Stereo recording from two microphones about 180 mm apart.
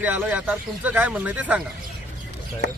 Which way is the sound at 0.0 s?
10° right (ahead or behind).